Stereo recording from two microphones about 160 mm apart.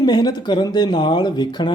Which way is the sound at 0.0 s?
25° left (ahead or behind).